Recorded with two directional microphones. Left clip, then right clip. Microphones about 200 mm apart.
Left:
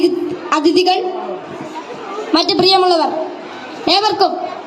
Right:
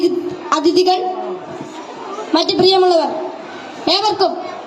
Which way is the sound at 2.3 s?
5° left (ahead or behind).